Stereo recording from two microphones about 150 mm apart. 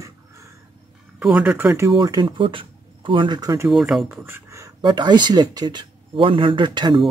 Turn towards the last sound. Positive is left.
turn(degrees=-30)  # may be behind; listen again after turning